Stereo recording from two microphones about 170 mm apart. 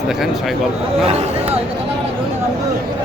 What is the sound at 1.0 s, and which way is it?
Speech, 35° right (ahead or behind).